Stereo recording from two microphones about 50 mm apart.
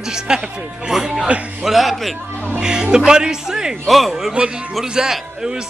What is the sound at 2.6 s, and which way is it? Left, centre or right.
A man's voice, centre.